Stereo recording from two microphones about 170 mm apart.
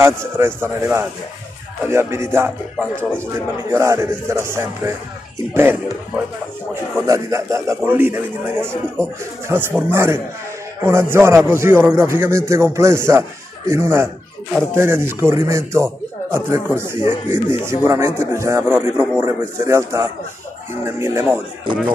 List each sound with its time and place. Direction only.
0.0 s a man's voice: 15° right (ahead or behind)